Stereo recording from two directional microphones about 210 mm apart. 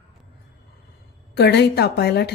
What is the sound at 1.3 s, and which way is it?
A woman's voice, 50° left (ahead or behind).